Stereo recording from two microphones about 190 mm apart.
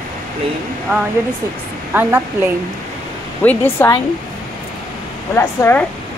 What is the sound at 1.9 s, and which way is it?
Speech, 10° right (ahead or behind).